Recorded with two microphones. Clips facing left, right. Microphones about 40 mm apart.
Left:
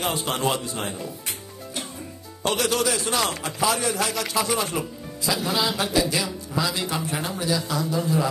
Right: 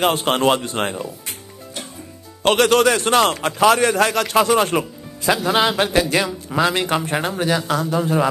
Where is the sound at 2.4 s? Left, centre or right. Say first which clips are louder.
Right 9 dB; right.